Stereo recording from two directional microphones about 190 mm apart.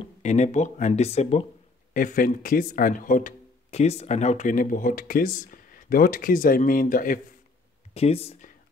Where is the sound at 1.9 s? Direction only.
45° left (ahead or behind).